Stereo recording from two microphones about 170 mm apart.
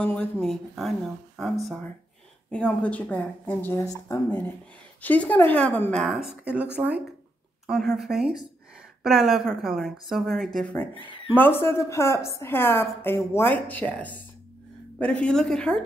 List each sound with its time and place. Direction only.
0.0 s a woman's voice: 10° left (ahead or behind)
11.0 s speech: 30° left (ahead or behind)
11.3 s a woman's voice: 10° left (ahead or behind)